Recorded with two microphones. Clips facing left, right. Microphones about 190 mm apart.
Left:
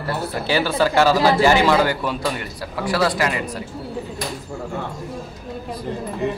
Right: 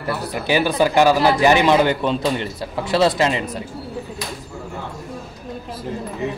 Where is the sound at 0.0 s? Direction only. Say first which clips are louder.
Even; 15° right (ahead or behind).